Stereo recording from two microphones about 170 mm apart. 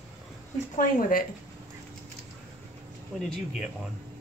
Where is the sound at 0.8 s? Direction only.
55° left (ahead or behind).